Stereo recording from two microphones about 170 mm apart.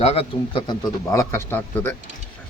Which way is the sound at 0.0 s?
35° left (ahead or behind).